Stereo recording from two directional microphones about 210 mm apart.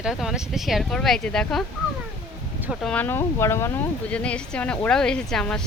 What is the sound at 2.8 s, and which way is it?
Speech, 5° left (ahead or behind).